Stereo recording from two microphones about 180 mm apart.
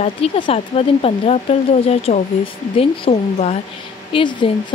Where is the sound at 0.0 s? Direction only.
35° left (ahead or behind).